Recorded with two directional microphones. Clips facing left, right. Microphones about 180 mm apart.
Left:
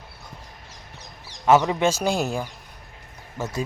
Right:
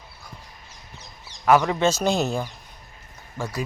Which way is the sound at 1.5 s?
25° left (ahead or behind).